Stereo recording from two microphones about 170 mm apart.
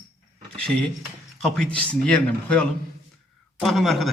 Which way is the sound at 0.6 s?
5° left (ahead or behind).